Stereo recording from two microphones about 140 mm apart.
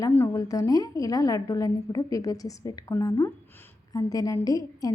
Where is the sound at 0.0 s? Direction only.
25° left (ahead or behind).